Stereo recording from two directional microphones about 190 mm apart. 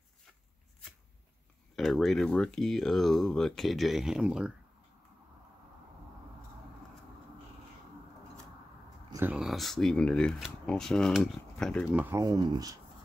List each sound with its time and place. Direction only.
1.8 s speech: centre (ahead or behind)
9.1 s speech: 10° right (ahead or behind)
11.9 s speech: 10° right (ahead or behind)